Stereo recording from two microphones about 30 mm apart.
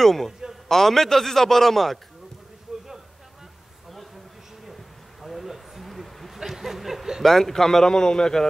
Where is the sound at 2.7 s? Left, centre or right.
Centre.